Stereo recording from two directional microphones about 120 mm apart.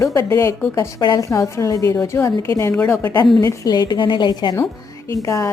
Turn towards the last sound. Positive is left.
turn(degrees=25)  # may be behind; listen again after turning